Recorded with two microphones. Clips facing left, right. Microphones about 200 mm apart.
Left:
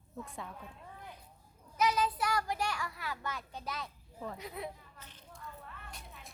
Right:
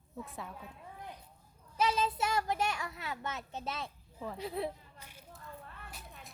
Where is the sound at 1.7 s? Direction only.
30° right (ahead or behind).